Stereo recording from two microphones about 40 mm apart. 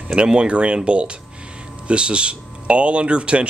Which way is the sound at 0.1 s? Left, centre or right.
Right.